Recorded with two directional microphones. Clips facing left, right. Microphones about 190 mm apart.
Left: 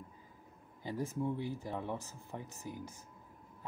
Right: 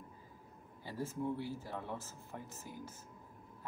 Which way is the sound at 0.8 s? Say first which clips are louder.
Left 2 dB; 15° left (ahead or behind).